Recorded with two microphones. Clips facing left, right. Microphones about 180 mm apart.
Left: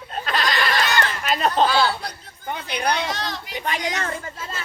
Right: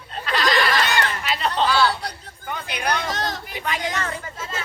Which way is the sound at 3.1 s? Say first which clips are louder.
Right 2 dB; 45° right (ahead or behind).